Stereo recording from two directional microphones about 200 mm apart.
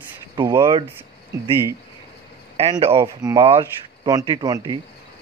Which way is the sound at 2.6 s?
30° right (ahead or behind).